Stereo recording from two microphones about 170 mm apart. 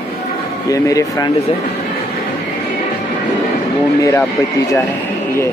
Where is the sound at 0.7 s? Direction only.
20° left (ahead or behind).